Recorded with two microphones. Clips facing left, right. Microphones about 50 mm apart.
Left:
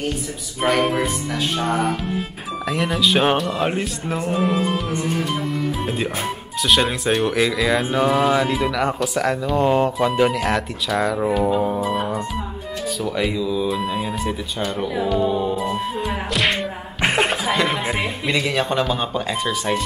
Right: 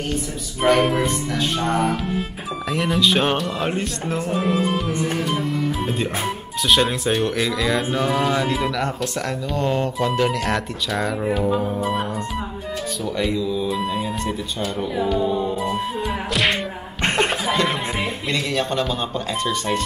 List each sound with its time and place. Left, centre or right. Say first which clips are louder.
0.1 s speech: right 2 dB; centre
11.8 s music: left 1 dB; centre
13.0 s speech: even; centre
15.1 s music: left 3 dB; centre
15.5 s music: even; centre
17.0 s speech: left 1 dB; centre